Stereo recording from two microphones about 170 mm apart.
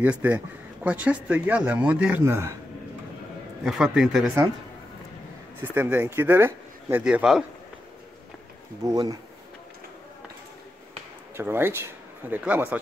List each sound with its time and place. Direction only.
0.0 s speech: 10° right (ahead or behind)
3.6 s a man's voice: 5° right (ahead or behind)
5.6 s speech: 10° right (ahead or behind)
8.8 s speech: 20° right (ahead or behind)
11.3 s speech: 15° right (ahead or behind)